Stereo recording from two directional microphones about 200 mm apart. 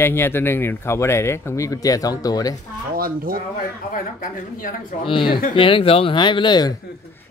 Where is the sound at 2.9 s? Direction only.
45° right (ahead or behind).